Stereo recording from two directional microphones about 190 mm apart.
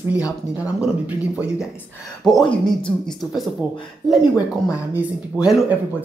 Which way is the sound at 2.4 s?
5° left (ahead or behind).